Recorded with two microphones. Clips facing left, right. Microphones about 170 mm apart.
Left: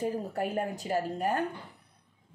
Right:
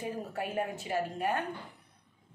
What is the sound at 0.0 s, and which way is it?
Speech, 40° left (ahead or behind).